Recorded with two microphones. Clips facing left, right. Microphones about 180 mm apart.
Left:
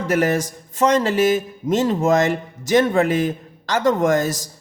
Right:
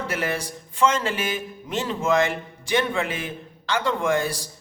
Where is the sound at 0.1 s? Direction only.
45° left (ahead or behind).